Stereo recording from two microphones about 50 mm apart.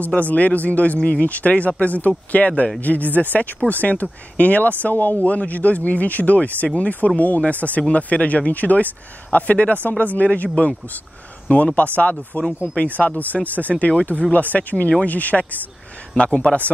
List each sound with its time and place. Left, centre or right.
0.2 s speech: left
16.2 s a man's voice: centre